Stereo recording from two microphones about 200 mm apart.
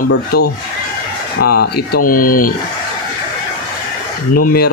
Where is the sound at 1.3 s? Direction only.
50° left (ahead or behind).